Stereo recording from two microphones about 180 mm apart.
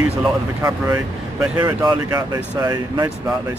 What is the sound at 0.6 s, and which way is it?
Speech, 20° right (ahead or behind).